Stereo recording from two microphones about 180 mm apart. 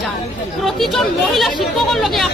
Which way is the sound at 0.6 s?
Centre (ahead or behind).